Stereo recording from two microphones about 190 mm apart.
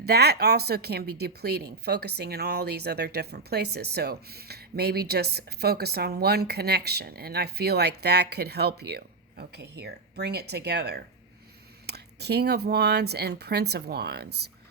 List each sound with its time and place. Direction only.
0.0 s a woman's voice: 60° right (ahead or behind)